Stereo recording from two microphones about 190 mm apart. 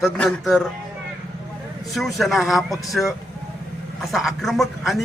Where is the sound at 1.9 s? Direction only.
Centre (ahead or behind).